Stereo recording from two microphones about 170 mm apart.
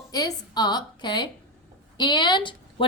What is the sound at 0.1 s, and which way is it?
A woman's voice, 20° left (ahead or behind).